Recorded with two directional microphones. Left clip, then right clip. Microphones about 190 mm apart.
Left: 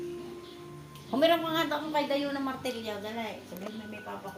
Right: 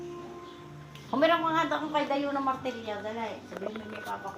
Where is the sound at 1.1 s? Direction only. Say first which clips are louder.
Right 1 dB; 65° left (ahead or behind).